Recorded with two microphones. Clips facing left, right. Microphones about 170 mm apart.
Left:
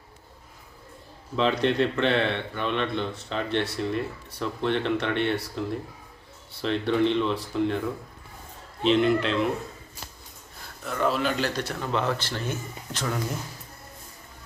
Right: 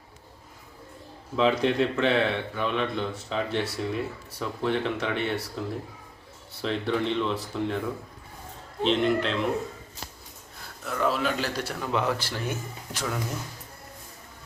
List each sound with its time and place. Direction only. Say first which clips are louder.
1.4 s a man's voice: even; 5° right (ahead or behind)
8.8 s a man's voice: left 2 dB; centre (ahead or behind)
10.8 s a man's voice: left 1 dB; centre (ahead or behind)